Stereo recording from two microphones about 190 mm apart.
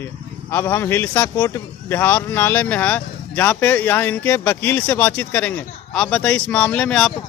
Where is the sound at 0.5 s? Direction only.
10° left (ahead or behind).